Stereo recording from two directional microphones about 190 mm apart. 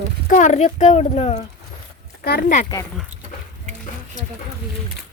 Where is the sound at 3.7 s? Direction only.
35° right (ahead or behind).